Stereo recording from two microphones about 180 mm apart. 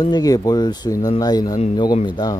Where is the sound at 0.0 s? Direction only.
20° left (ahead or behind).